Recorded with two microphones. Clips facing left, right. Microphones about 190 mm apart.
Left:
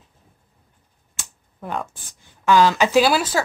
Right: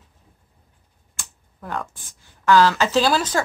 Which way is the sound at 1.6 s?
15° left (ahead or behind).